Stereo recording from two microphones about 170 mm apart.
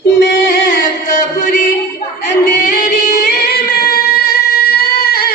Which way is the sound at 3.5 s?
70° left (ahead or behind).